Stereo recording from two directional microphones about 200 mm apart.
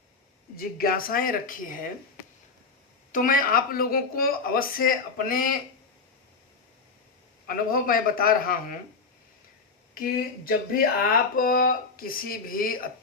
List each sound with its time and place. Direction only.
0.5 s speech: 45° left (ahead or behind)
3.1 s speech: 40° left (ahead or behind)
7.4 s speech: 45° left (ahead or behind)
9.9 s speech: 45° left (ahead or behind)